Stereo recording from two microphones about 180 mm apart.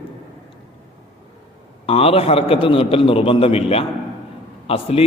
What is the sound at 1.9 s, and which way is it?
A man's voice, 35° left (ahead or behind).